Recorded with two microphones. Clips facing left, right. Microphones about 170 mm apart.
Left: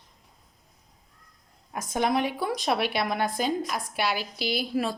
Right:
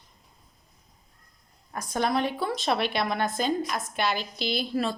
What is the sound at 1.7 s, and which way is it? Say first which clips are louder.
A woman's voice: left 1 dB; 20° left (ahead or behind).